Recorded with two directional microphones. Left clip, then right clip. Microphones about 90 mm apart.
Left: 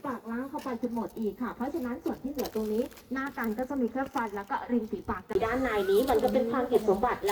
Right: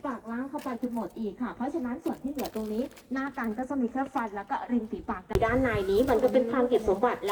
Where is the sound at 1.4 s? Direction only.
30° right (ahead or behind).